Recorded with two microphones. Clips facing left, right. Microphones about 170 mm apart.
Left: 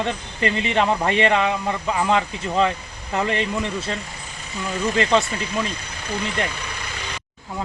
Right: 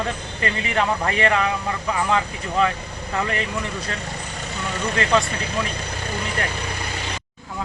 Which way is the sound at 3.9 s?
75° right (ahead or behind).